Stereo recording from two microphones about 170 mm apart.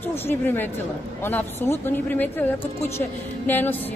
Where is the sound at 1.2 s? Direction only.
15° left (ahead or behind).